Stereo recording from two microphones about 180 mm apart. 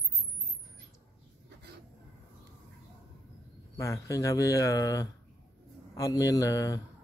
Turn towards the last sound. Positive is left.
turn(degrees=20)  # may be behind; listen again after turning